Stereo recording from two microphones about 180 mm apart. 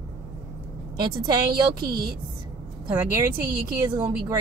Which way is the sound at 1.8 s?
60° right (ahead or behind).